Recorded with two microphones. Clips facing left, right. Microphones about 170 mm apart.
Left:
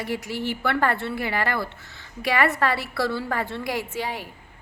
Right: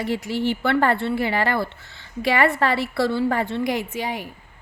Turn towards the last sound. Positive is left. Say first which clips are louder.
# right 2 dB
turn(degrees=-15)  # may be behind; listen again after turning